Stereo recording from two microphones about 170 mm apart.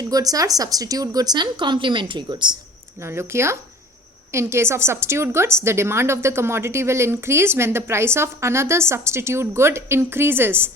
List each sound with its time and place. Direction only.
0.0 s speech: 20° right (ahead or behind)
3.0 s a woman's voice: 15° right (ahead or behind)